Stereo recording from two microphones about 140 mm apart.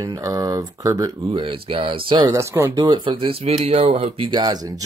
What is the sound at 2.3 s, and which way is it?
Speech, 20° right (ahead or behind).